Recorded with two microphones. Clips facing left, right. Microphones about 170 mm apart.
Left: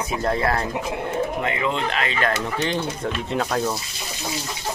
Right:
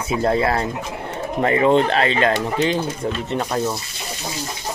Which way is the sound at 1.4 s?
40° right (ahead or behind).